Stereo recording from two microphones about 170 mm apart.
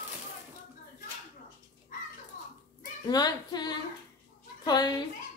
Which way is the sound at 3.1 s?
25° left (ahead or behind).